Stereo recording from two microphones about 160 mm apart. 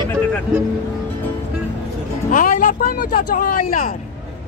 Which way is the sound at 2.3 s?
55° left (ahead or behind).